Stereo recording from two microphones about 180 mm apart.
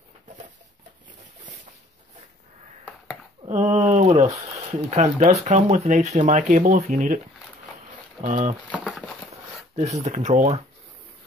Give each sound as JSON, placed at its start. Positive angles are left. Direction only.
{"t": 3.4, "sound": "speech", "side_deg": -35}
{"t": 8.2, "sound": "speech", "side_deg": -45}
{"t": 8.7, "sound": "a sound", "side_deg": 0}
{"t": 9.3, "sound": "speech", "side_deg": -35}